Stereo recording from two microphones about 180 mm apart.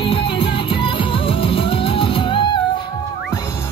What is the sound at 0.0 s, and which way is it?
Music, 30° left (ahead or behind).